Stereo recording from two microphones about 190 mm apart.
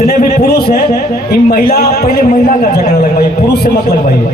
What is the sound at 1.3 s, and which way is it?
Speech, 55° left (ahead or behind).